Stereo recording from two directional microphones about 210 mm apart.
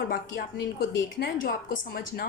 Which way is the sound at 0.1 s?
45° left (ahead or behind).